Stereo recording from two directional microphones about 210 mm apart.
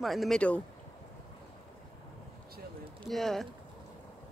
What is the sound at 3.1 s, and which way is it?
Speech, centre (ahead or behind).